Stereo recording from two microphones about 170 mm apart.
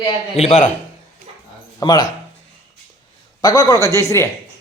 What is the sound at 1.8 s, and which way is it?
Speech, 25° left (ahead or behind).